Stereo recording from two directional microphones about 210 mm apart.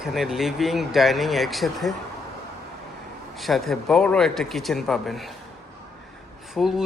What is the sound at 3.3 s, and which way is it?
Speech, centre (ahead or behind).